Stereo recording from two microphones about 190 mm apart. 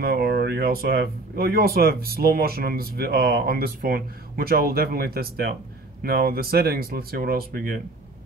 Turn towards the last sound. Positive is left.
turn(degrees=-50)  # may be behind; listen again after turning